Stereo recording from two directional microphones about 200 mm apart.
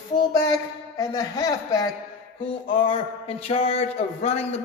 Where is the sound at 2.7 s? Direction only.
30° left (ahead or behind).